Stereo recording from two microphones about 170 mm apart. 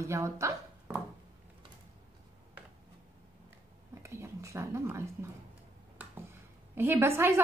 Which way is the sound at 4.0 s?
15° right (ahead or behind).